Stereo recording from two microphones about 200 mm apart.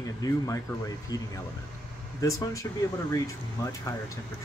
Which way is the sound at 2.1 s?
15° left (ahead or behind).